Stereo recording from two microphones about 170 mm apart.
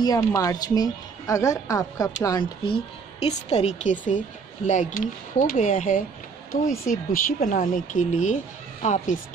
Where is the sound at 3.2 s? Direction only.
40° left (ahead or behind).